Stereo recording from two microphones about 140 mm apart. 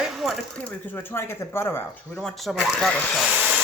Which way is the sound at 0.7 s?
15° left (ahead or behind).